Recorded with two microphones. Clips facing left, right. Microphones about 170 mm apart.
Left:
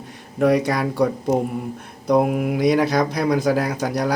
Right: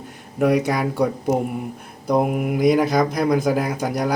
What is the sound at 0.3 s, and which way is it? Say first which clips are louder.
Speech: left 1 dB; 5° right (ahead or behind).